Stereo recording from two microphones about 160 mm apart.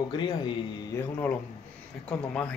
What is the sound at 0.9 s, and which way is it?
Speech, 15° left (ahead or behind).